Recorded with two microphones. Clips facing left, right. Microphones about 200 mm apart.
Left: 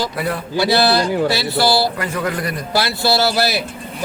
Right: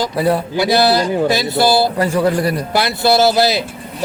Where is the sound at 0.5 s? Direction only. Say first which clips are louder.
Left 2 dB; 15° right (ahead or behind).